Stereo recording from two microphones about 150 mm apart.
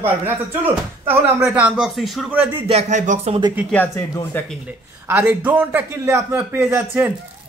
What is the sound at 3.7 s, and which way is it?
Speech, 15° left (ahead or behind).